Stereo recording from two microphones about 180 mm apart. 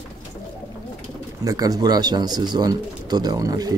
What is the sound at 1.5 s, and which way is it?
Speech, 20° right (ahead or behind).